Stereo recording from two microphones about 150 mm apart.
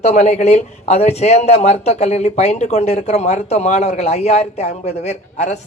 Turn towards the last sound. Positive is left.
turn(degrees=45)  # may be behind; listen again after turning